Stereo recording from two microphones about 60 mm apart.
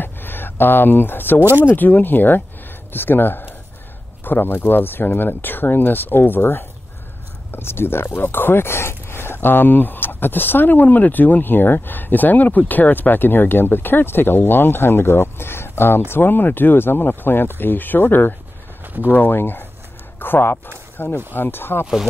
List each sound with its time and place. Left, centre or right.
0.0 s a sound: left
1.4 s speech: right
1.7 s speech: left